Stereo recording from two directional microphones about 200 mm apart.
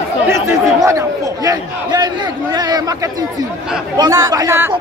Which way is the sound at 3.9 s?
20° right (ahead or behind).